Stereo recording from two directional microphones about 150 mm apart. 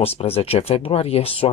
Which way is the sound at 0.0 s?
40° left (ahead or behind).